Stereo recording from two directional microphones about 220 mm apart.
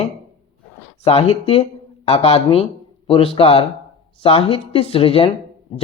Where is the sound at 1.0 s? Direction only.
25° left (ahead or behind).